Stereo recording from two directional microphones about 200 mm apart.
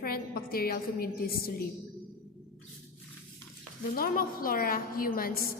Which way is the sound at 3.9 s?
45° left (ahead or behind).